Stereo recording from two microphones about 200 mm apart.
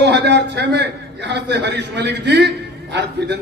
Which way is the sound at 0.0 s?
60° right (ahead or behind).